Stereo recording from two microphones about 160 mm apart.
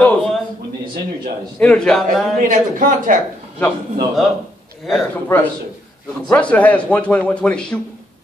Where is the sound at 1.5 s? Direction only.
5° left (ahead or behind).